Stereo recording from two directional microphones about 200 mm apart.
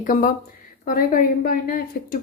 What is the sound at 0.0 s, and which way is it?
A woman's voice, 45° left (ahead or behind).